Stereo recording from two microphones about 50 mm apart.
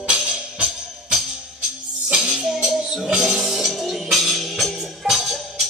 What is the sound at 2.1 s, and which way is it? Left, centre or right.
Music, centre.